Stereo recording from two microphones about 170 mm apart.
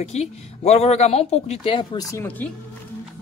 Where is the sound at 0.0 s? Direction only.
40° left (ahead or behind); by 2.2 s 20° left (ahead or behind).